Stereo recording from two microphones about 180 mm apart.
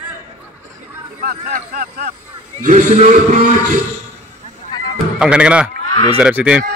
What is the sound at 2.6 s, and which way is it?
Speech, 45° right (ahead or behind).